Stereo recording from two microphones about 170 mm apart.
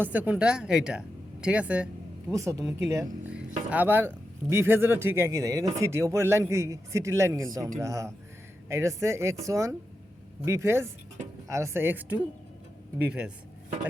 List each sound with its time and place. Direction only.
0.0 s speech: 10° right (ahead or behind)
2.3 s speech: 20° right (ahead or behind)